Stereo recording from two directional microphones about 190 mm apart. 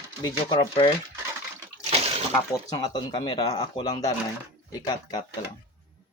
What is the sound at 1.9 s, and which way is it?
Water, 30° right (ahead or behind).